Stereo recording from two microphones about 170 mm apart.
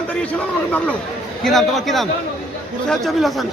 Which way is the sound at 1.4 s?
Centre (ahead or behind).